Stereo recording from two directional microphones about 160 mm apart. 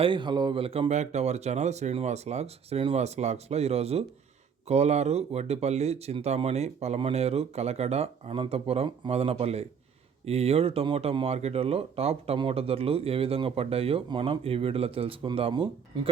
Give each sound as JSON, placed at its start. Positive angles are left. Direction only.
{"t": 0.0, "sound": "speech", "side_deg": -30}